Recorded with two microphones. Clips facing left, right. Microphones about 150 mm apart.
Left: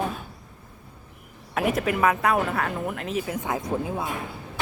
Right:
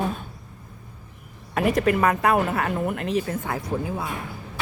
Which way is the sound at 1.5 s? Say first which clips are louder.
Right 3 dB; centre (ahead or behind).